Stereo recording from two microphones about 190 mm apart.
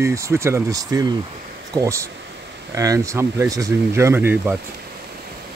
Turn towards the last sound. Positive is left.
turn(degrees=-10)  # may be behind; listen again after turning